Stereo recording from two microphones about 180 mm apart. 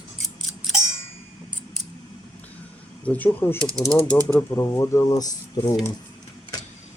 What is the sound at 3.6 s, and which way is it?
Speech, 20° right (ahead or behind).